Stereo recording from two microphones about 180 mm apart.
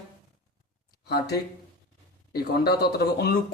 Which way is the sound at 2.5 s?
60° left (ahead or behind).